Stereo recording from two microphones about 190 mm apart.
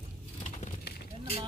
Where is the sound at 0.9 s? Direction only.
60° left (ahead or behind).